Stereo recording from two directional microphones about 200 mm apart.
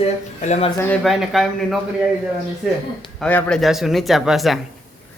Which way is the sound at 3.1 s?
5° left (ahead or behind).